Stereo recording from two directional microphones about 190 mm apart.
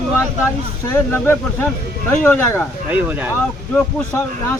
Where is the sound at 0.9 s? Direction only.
10° left (ahead or behind).